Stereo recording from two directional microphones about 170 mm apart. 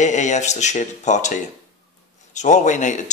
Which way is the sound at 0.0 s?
45° left (ahead or behind).